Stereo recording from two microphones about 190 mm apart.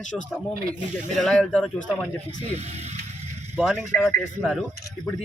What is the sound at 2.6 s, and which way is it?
Speech, 35° right (ahead or behind).